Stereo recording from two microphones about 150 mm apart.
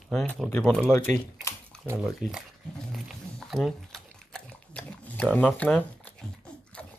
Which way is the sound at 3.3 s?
Centre (ahead or behind).